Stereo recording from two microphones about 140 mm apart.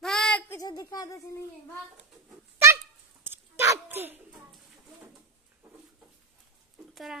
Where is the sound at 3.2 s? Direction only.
15° right (ahead or behind).